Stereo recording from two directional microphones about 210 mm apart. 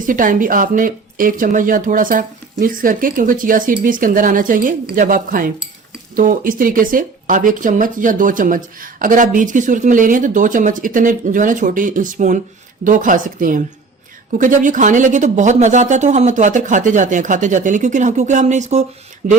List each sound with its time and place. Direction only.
0.0 s speech: 40° right (ahead or behind)